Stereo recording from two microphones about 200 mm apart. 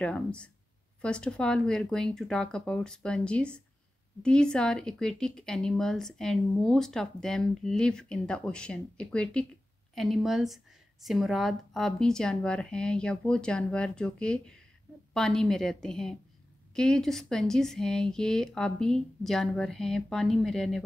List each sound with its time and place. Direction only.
0.0 s a woman's voice: 5° left (ahead or behind)